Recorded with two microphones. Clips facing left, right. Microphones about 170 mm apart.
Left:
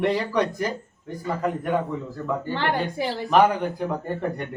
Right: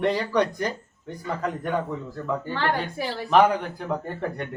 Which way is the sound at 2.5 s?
20° left (ahead or behind).